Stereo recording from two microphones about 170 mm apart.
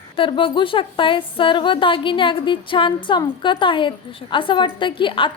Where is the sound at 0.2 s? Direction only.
30° left (ahead or behind).